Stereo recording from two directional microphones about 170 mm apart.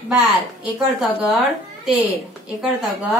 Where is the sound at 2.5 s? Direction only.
5° right (ahead or behind).